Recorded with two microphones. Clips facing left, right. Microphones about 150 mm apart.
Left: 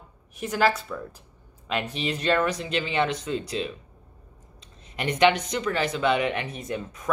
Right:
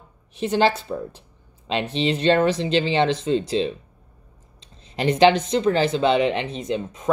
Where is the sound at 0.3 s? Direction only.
25° right (ahead or behind).